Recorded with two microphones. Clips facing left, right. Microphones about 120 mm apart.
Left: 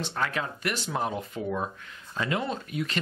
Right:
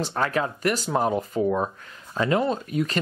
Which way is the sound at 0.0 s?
40° right (ahead or behind).